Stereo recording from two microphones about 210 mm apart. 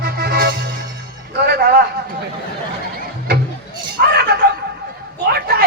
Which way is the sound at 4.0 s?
45° right (ahead or behind).